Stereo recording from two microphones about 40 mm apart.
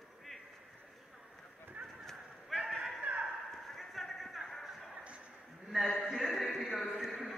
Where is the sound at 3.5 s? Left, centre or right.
Centre.